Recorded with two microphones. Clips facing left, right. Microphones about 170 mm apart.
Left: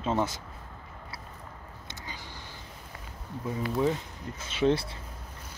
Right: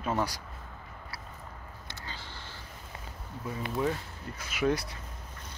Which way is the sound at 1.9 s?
15° left (ahead or behind).